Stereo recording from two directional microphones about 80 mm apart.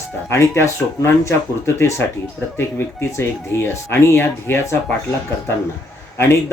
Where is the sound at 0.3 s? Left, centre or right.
Left.